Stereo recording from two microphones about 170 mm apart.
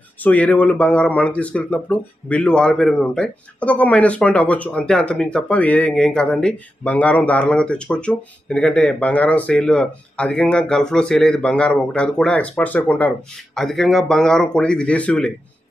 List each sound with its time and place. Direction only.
0.2 s speech: 10° left (ahead or behind)